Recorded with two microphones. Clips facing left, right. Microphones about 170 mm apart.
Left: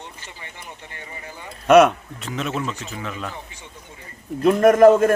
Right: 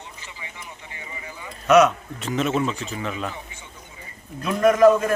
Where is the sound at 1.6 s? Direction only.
55° left (ahead or behind).